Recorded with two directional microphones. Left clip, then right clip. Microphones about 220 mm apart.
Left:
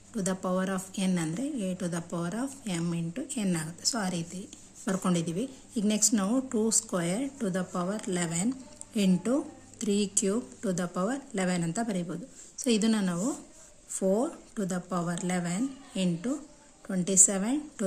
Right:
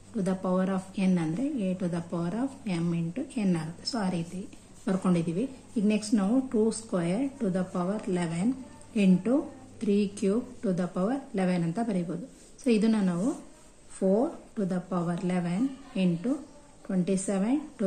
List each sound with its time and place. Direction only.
0.1 s a woman's voice: 25° left (ahead or behind)